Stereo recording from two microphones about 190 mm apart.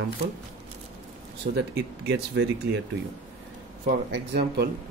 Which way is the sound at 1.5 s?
60° right (ahead or behind).